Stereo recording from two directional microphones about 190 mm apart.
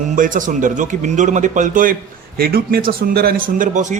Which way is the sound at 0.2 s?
45° right (ahead or behind).